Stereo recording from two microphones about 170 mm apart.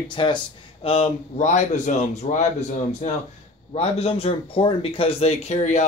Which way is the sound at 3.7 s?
35° left (ahead or behind).